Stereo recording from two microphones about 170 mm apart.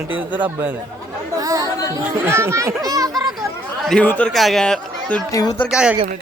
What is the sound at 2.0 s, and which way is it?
Speech, 15° right (ahead or behind).